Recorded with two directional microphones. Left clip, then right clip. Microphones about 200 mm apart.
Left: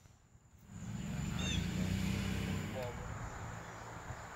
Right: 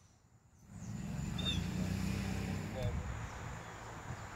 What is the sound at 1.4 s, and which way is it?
Vehicle, 45° right (ahead or behind).